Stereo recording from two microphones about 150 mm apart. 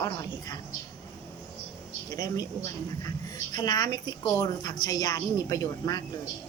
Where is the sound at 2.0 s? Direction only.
25° left (ahead or behind).